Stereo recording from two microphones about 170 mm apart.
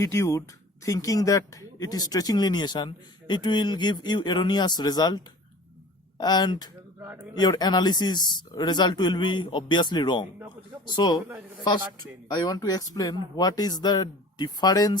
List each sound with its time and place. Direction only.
0.0 s speech: 15° left (ahead or behind)
7.0 s a man's voice: 15° right (ahead or behind)
7.3 s speech: 25° left (ahead or behind)
12.3 s speech: 25° left (ahead or behind)